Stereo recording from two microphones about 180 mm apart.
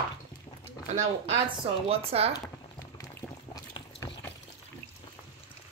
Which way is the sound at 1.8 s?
35° right (ahead or behind).